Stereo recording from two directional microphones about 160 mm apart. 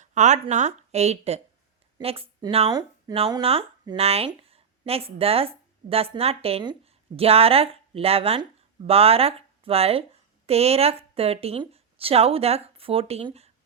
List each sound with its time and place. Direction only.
0.0 s speech: 50° right (ahead or behind)
4.3 s a sound: 35° right (ahead or behind)
4.9 s speech: 35° right (ahead or behind)